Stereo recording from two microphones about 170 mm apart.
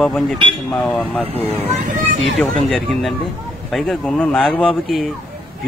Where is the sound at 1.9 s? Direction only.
50° right (ahead or behind).